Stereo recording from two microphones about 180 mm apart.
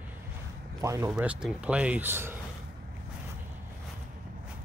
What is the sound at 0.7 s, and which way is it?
Speech, 15° right (ahead or behind).